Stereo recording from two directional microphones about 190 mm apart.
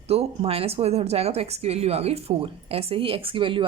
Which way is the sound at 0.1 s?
30° right (ahead or behind).